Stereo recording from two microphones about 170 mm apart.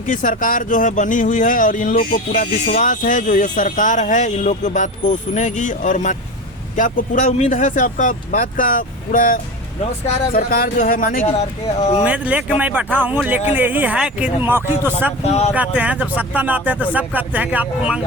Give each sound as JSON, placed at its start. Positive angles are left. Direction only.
{"t": 0.1, "sound": "speech", "side_deg": 50}
{"t": 12.0, "sound": "speech", "side_deg": -10}
{"t": 15.2, "sound": "speech", "side_deg": 40}
{"t": 15.5, "sound": "speech", "side_deg": -10}